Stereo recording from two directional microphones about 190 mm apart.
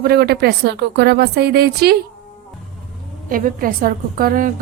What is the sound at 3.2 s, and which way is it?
A woman's voice, 45° right (ahead or behind).